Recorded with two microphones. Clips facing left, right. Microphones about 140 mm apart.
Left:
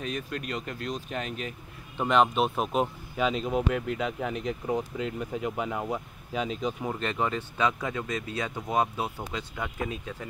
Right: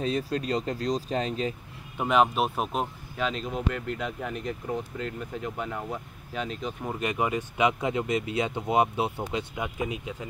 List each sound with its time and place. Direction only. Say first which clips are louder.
0.0 s speech: right 6 dB; 30° right (ahead or behind)
2.0 s speech: even; 5° right (ahead or behind)
7.0 s speech: right 2 dB; 10° right (ahead or behind)